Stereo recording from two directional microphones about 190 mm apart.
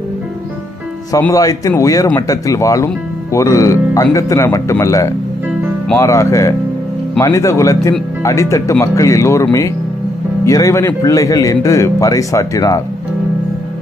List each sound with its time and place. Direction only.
1.1 s speech: 15° left (ahead or behind)